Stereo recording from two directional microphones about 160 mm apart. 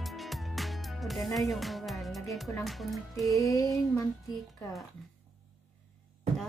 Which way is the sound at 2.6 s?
Centre (ahead or behind).